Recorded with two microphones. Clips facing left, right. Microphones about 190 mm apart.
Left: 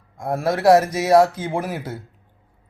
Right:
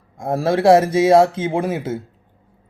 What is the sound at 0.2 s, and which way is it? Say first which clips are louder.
Speech: right 4 dB; 25° right (ahead or behind).